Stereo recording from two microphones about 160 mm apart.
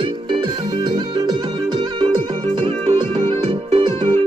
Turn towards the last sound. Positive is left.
turn(degrees=-30)  # may be behind; listen again after turning